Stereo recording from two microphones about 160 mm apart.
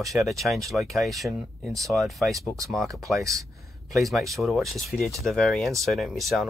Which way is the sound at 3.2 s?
20° right (ahead or behind).